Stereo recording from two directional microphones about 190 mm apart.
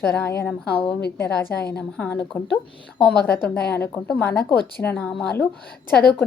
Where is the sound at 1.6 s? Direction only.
60° left (ahead or behind).